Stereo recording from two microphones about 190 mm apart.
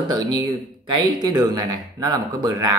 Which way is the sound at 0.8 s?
20° right (ahead or behind).